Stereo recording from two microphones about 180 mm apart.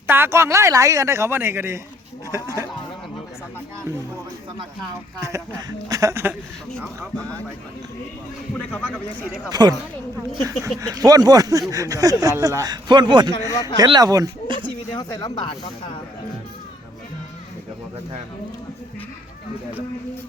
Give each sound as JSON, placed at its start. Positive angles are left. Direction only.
{"t": 0.1, "sound": "speech", "side_deg": -15}
{"t": 5.2, "sound": "speech", "side_deg": -20}
{"t": 6.7, "sound": "speech", "side_deg": 0}
{"t": 8.5, "sound": "speech", "side_deg": 10}
{"t": 9.5, "sound": "speech", "side_deg": -20}
{"t": 13.5, "sound": "speech", "side_deg": 20}
{"t": 13.7, "sound": "speech", "side_deg": -25}
{"t": 14.9, "sound": "speech", "side_deg": 25}